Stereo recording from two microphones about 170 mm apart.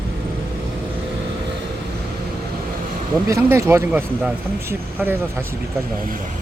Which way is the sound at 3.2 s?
15° right (ahead or behind).